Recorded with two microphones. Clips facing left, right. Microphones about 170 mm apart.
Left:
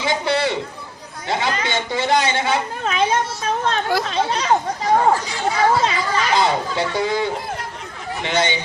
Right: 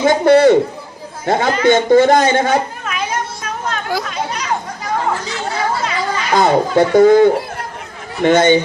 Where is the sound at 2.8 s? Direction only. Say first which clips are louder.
Left 3 dB; 30° left (ahead or behind).